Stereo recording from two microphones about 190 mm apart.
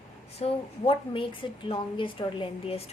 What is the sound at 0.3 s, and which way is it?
A woman's voice, 30° left (ahead or behind).